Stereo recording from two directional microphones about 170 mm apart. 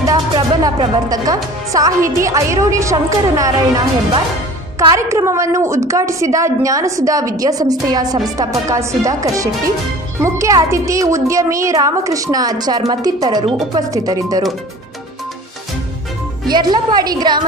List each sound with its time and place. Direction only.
0.0 s speech: 20° right (ahead or behind)
16.4 s speech: 25° right (ahead or behind)